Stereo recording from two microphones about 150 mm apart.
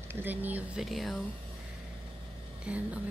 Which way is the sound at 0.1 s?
15° right (ahead or behind).